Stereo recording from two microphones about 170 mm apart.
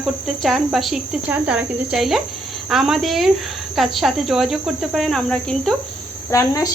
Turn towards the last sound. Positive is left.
turn(degrees=20)  # may be behind; listen again after turning